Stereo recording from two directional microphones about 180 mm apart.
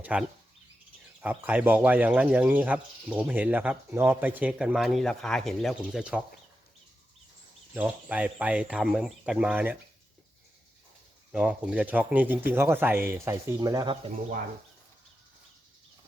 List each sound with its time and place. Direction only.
0.0 s speech: 10° right (ahead or behind)
7.7 s speech: 10° right (ahead or behind)
11.3 s speech: 5° right (ahead or behind); by 13.9 s 20° right (ahead or behind)